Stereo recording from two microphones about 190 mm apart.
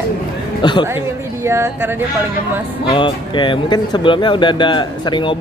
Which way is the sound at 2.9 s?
25° left (ahead or behind).